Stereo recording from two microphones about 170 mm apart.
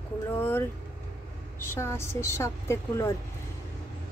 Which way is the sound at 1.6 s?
15° left (ahead or behind).